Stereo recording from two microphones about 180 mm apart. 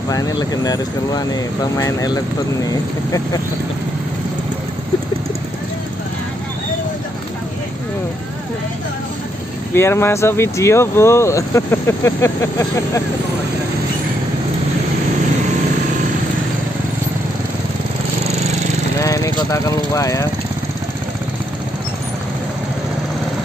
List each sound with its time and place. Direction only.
0.1 s speech: 20° left (ahead or behind)
9.8 s speech: 15° left (ahead or behind)
18.9 s vehicle: 15° left (ahead or behind)